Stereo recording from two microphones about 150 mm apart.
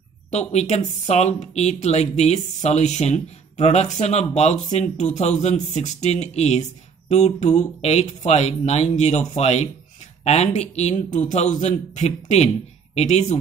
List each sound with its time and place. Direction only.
0.3 s speech: 50° left (ahead or behind)